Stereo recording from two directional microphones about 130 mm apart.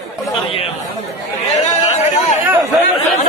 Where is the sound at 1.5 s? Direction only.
55° left (ahead or behind).